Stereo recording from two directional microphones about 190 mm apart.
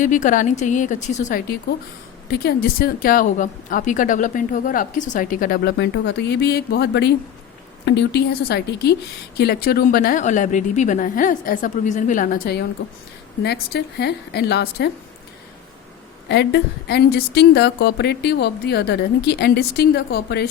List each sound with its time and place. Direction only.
0.0 s a woman's voice: 40° left (ahead or behind)
2.3 s a woman's voice: 55° left (ahead or behind)
13.4 s a woman's voice: 60° left (ahead or behind)
16.3 s a woman's voice: 65° left (ahead or behind)